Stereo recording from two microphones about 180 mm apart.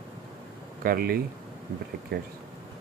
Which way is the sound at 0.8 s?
55° right (ahead or behind).